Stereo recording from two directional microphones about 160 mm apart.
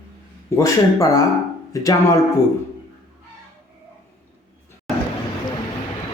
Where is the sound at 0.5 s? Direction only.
15° left (ahead or behind).